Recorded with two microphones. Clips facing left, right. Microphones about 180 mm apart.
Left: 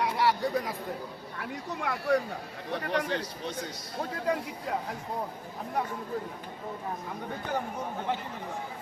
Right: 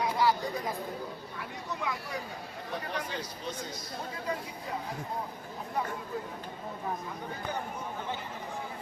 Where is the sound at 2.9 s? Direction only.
75° left (ahead or behind).